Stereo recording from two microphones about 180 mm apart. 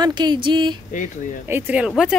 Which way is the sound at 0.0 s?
25° right (ahead or behind).